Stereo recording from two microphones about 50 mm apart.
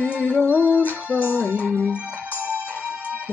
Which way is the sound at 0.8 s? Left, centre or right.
Left.